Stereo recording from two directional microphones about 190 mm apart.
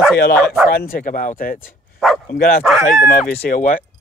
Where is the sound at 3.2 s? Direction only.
5° left (ahead or behind).